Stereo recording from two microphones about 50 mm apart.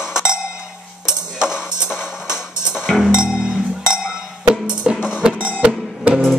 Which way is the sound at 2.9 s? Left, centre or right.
Centre.